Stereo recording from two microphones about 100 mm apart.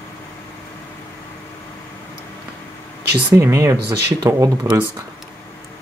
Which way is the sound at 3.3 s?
30° right (ahead or behind).